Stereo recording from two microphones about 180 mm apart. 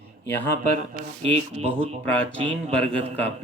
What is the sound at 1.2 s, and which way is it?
Speech, 35° right (ahead or behind).